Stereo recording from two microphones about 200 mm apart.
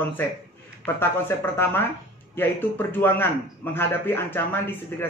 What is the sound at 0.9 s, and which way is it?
A man's voice, 10° left (ahead or behind).